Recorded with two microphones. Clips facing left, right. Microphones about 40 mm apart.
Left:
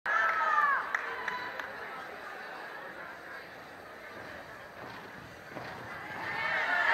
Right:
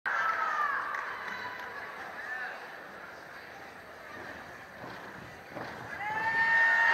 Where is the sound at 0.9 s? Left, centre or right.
Left.